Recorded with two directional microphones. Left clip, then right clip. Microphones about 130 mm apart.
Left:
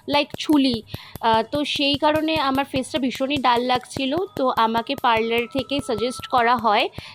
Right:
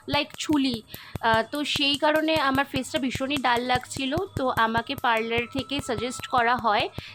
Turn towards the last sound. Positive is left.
turn(degrees=25)  # may be behind; listen again after turning